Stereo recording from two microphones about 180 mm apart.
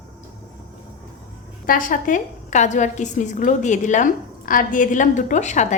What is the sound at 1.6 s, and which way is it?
A woman's voice, 50° left (ahead or behind).